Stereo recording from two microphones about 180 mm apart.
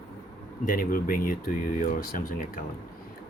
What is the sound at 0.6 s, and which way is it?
Speech, 50° left (ahead or behind).